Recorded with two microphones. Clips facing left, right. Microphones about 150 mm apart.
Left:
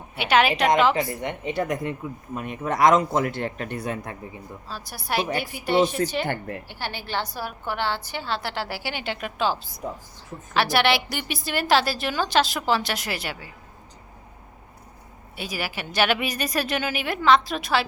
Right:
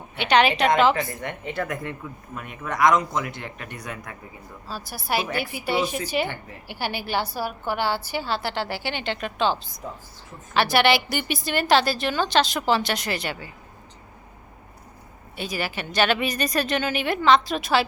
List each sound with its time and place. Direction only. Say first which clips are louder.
0.2 s a woman's voice: right 1 dB; 5° left (ahead or behind)
1.2 s speech: left 3 dB; 15° left (ahead or behind)
4.7 s a woman's voice: right 1 dB; 5° right (ahead or behind)
6.2 s a woman's voice: left 5 dB; 50° left (ahead or behind)
6.7 s a woman's voice: right 4 dB; 10° right (ahead or behind); by 13.5 s 5° left (ahead or behind)
15.4 s a woman's voice: right 2 dB; 10° left (ahead or behind)